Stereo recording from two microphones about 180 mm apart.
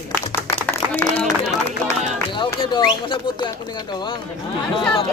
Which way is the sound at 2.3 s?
25° left (ahead or behind).